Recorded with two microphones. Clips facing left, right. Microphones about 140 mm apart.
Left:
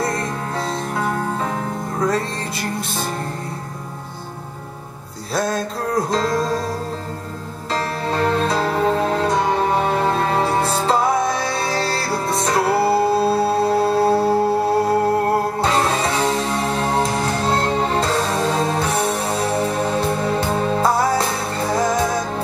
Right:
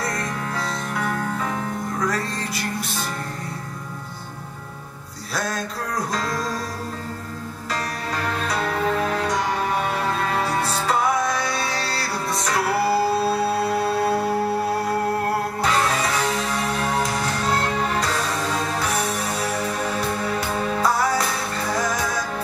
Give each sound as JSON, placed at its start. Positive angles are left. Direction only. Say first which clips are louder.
{"t": 0.0, "sound": "music", "louder": "left 4 dB", "side_deg": 25}
{"t": 5.3, "sound": "music", "louder": "left 6 dB", "side_deg": 25}
{"t": 7.7, "sound": "music", "louder": "left 6 dB", "side_deg": 30}